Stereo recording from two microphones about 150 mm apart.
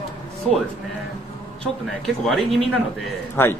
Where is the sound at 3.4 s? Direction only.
15° left (ahead or behind).